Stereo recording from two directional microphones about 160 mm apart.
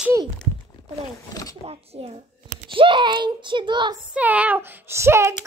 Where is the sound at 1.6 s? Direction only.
40° right (ahead or behind).